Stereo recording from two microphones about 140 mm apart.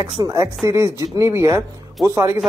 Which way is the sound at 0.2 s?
25° right (ahead or behind).